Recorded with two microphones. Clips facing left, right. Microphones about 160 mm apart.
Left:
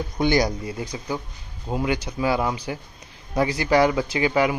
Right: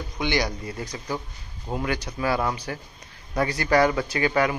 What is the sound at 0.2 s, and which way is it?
Speech, 40° left (ahead or behind).